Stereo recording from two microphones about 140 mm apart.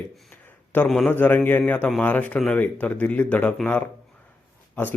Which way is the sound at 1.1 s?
15° left (ahead or behind).